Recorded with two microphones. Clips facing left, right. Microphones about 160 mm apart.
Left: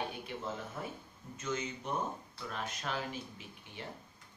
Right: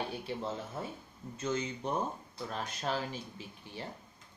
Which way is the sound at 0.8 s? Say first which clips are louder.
Right 2 dB; 30° right (ahead or behind).